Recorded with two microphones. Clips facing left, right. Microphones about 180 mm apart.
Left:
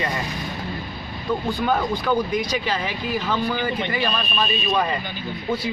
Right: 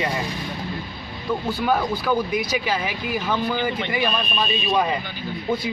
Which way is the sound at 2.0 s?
5° right (ahead or behind).